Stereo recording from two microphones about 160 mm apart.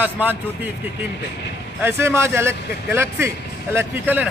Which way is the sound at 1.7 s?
15° right (ahead or behind).